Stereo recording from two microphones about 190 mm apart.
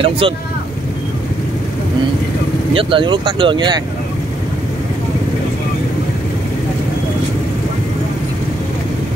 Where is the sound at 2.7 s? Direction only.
30° right (ahead or behind).